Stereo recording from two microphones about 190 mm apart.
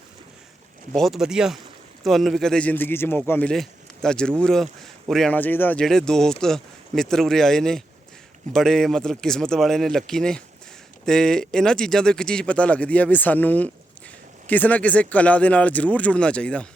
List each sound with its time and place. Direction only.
0.9 s speech: centre (ahead or behind)